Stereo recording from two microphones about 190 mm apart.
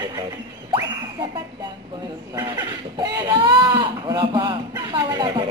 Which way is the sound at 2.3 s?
20° right (ahead or behind).